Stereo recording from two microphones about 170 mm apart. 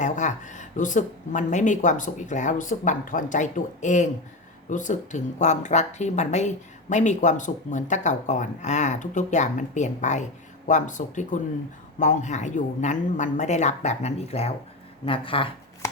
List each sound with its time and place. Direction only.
0.0 s speech: 45° left (ahead or behind)